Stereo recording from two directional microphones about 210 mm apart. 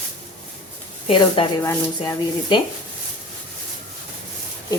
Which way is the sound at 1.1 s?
25° left (ahead or behind).